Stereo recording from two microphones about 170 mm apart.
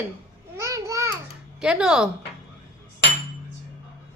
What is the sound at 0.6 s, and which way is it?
Babbling, 15° right (ahead or behind).